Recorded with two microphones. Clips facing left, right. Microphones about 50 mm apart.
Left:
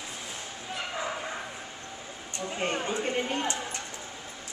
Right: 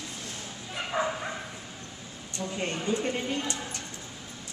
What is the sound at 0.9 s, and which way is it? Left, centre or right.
Bow-wow, right.